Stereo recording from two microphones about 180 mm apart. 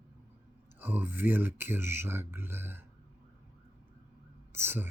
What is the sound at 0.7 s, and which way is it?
Speech, 10° right (ahead or behind).